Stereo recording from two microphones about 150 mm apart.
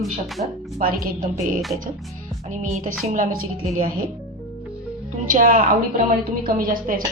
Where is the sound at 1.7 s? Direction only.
60° right (ahead or behind).